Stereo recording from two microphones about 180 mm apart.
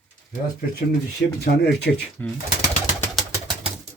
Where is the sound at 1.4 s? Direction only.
65° left (ahead or behind).